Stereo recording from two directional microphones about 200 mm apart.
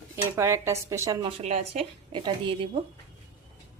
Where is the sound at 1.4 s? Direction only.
30° right (ahead or behind).